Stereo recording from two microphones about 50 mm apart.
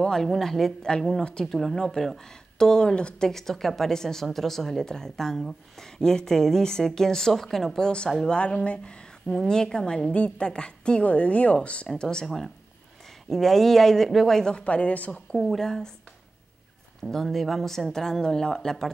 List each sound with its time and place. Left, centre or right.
0.0 s a woman's voice: centre
3.3 s a woman's voice: centre
10.1 s a woman's voice: left
13.3 s a woman's voice: centre; by 15.2 s left
15.3 s a woman's voice: centre
17.0 s a woman's voice: centre